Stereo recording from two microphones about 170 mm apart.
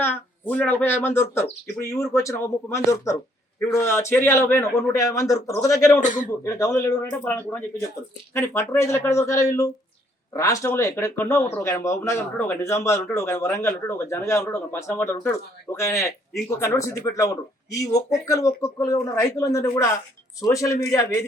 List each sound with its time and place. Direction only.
0.0 s a man's voice: 10° left (ahead or behind)
6.0 s speech: 45° left (ahead or behind)
6.4 s a man's voice: 20° left (ahead or behind)